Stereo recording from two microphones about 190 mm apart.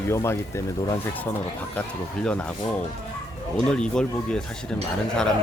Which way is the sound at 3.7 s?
5° left (ahead or behind).